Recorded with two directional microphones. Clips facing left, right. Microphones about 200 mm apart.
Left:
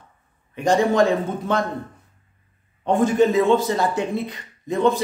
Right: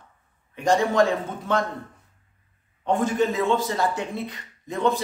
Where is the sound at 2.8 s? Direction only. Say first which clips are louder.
Left 5 dB; 20° left (ahead or behind).